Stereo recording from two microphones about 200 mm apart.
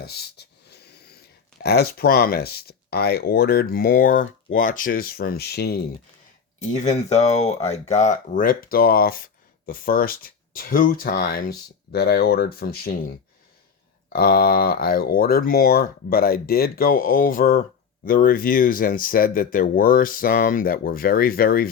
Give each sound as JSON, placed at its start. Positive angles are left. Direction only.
{"t": 0.0, "sound": "a sound", "side_deg": 55}
{"t": 1.6, "sound": "speech", "side_deg": 55}
{"t": 6.7, "sound": "speech", "side_deg": 35}
{"t": 14.1, "sound": "speech", "side_deg": 45}